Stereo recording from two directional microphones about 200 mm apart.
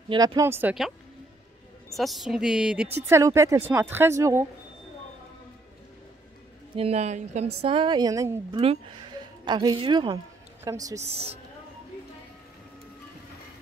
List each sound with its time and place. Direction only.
0.1 s speech: 20° right (ahead or behind); by 0.9 s 5° right (ahead or behind)
2.0 s a sound: centre (ahead or behind)
3.1 s speech: 15° right (ahead or behind)
6.8 s a woman's voice: 30° right (ahead or behind); by 11.0 s 15° right (ahead or behind)